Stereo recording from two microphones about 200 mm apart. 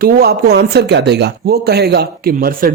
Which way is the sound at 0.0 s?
50° right (ahead or behind).